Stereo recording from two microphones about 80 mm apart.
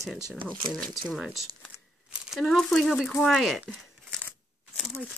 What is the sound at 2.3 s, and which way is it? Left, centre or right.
Speech, centre.